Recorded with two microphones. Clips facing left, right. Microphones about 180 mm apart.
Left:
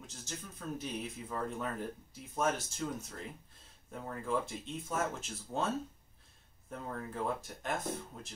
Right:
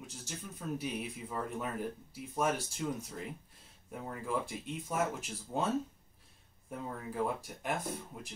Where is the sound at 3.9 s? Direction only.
10° right (ahead or behind).